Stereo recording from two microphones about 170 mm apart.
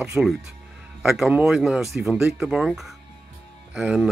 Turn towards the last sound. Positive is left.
turn(degrees=0)  # may be behind; listen again after turning